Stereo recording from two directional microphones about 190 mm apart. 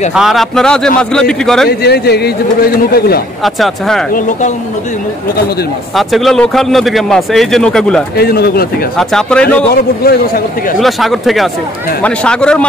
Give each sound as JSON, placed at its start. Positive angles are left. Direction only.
{"t": 0.1, "sound": "speech", "side_deg": 0}
{"t": 1.7, "sound": "a man's voice", "side_deg": 60}
{"t": 3.4, "sound": "speech", "side_deg": 0}
{"t": 5.9, "sound": "speech", "side_deg": 0}
{"t": 8.2, "sound": "a man's voice", "side_deg": 55}
{"t": 8.9, "sound": "speech", "side_deg": 5}
{"t": 9.8, "sound": "a man's voice", "side_deg": 50}
{"t": 10.8, "sound": "speech", "side_deg": 0}